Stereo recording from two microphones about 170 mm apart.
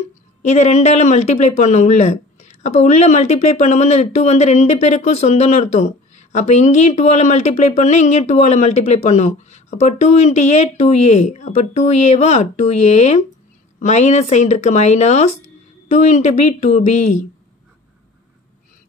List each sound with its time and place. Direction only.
0.4 s speech: 45° left (ahead or behind)